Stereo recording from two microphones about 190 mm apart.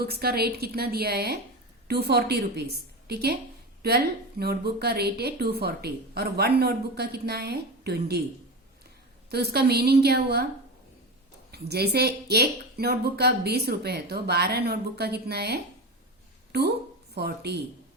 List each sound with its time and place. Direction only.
0.0 s speech: 55° right (ahead or behind)
9.3 s speech: 55° right (ahead or behind)
11.5 s speech: 55° right (ahead or behind)
17.2 s speech: 60° right (ahead or behind)